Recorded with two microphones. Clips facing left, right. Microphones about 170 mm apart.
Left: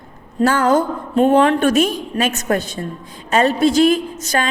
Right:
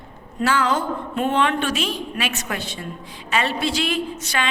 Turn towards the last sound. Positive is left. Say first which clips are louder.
# left 4 dB
turn(degrees=40)  # may be behind; listen again after turning